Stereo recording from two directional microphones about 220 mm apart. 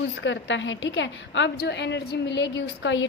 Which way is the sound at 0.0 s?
55° left (ahead or behind).